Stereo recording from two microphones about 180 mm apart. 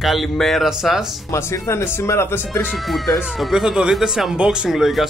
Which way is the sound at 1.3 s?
15° left (ahead or behind).